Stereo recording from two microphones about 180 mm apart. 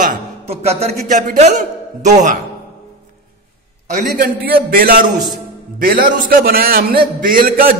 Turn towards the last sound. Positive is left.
turn(degrees=-55)  # may be behind; listen again after turning